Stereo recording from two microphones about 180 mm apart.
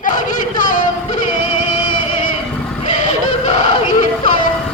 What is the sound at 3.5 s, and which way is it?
Speech, 40° left (ahead or behind).